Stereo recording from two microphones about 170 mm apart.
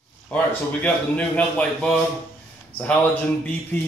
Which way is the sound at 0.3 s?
10° left (ahead or behind).